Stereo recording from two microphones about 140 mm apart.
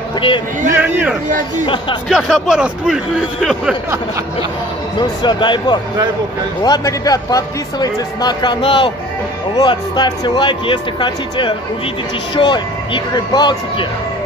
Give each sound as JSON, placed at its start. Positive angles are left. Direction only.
{"t": 0.7, "sound": "speech", "side_deg": -10}
{"t": 2.0, "sound": "a man's voice", "side_deg": 0}
{"t": 4.9, "sound": "speech", "side_deg": 35}